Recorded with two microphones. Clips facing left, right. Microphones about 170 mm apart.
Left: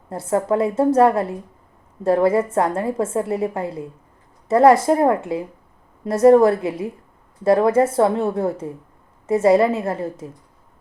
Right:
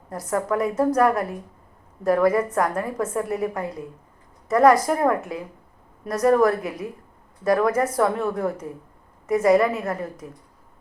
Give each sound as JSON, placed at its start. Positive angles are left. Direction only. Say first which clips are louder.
{"t": 0.1, "sound": "a woman's voice", "louder": "left 4 dB", "side_deg": 25}